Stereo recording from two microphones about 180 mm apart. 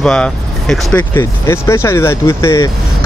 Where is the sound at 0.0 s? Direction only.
5° left (ahead or behind).